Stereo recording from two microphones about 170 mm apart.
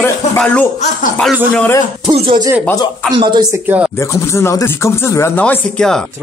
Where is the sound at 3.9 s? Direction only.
15° left (ahead or behind).